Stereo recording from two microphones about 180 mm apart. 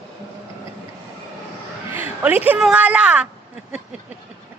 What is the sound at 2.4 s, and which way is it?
Speech, 5° right (ahead or behind).